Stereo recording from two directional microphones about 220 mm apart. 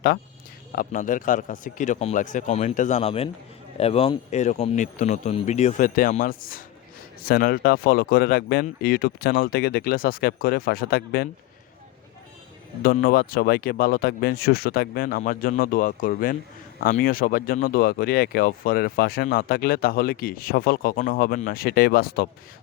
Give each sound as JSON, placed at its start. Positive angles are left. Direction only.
{"t": 0.7, "sound": "speech", "side_deg": 40}
{"t": 12.8, "sound": "speech", "side_deg": 40}